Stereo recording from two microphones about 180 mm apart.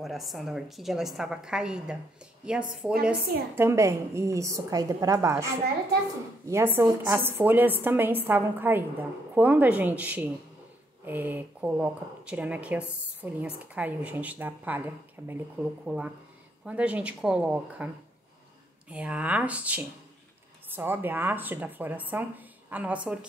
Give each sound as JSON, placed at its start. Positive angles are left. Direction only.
{"t": 0.0, "sound": "a woman's voice", "side_deg": 0}
{"t": 18.9, "sound": "a woman's voice", "side_deg": -5}